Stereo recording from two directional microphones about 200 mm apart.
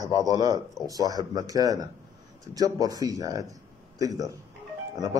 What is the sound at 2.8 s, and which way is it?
A man's voice, 20° right (ahead or behind).